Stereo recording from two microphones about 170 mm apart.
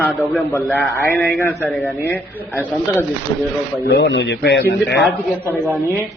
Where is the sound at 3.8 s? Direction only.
80° left.